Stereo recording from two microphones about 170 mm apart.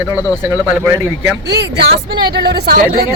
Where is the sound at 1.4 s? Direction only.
75° right (ahead or behind).